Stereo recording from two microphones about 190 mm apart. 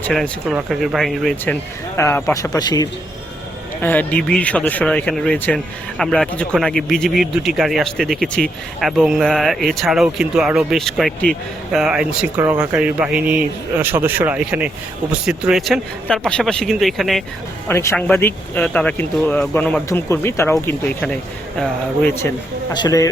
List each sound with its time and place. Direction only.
0.0 s speech: centre (ahead or behind)
2.0 s speech: 10° left (ahead or behind)
3.8 s speech: 10° left (ahead or behind)
17.7 s speech: 10° left (ahead or behind)
22.7 s speech: 20° left (ahead or behind)